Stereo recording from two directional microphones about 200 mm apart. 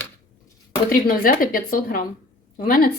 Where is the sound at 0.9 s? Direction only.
45° left (ahead or behind).